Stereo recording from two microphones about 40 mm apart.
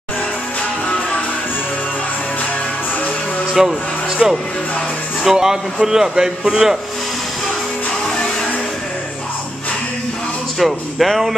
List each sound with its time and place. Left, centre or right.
3.6 s a man's voice: centre
10.6 s speech: centre